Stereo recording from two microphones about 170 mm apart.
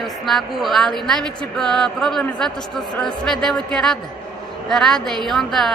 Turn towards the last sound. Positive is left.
turn(degrees=0)  # may be behind; listen again after turning